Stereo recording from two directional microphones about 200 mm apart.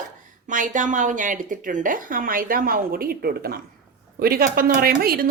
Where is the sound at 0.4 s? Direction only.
40° right (ahead or behind).